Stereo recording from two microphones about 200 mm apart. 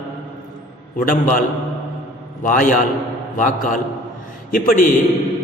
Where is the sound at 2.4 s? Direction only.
45° left (ahead or behind).